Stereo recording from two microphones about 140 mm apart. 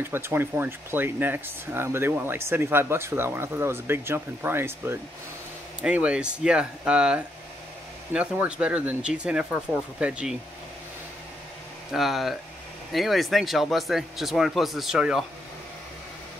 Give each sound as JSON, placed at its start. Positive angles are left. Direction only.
{"t": 0.0, "sound": "speech", "side_deg": -15}
{"t": 11.9, "sound": "speech", "side_deg": 0}